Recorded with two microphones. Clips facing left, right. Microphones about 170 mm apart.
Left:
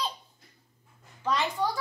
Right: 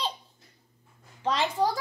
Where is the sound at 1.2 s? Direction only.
30° right (ahead or behind).